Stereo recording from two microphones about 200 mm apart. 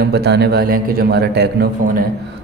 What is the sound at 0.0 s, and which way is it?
A man's voice, 55° right (ahead or behind).